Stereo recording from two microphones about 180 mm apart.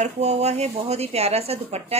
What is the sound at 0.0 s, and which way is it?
Speech, 35° right (ahead or behind).